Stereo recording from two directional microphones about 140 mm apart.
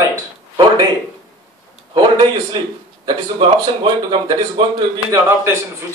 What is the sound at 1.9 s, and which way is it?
A man's voice, 30° right (ahead or behind).